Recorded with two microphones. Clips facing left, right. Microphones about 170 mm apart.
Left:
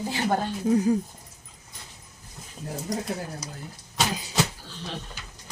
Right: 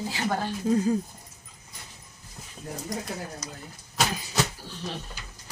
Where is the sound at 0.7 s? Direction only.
15° left (ahead or behind).